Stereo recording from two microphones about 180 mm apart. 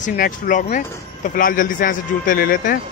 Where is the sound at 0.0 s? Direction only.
50° left (ahead or behind).